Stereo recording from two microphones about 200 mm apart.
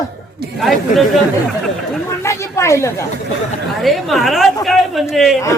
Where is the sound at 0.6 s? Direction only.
Centre (ahead or behind).